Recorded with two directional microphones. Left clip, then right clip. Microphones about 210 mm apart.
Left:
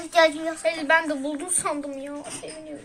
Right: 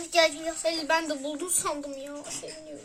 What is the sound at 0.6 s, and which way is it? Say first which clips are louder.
Speech: left 5 dB; 30° right (ahead or behind).